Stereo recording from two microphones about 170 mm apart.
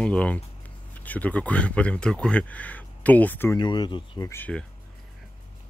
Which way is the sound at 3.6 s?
25° left (ahead or behind).